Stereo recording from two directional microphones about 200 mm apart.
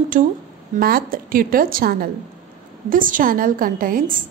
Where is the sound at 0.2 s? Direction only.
40° right (ahead or behind).